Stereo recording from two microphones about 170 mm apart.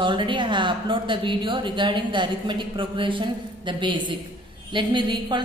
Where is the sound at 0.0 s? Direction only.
30° right (ahead or behind).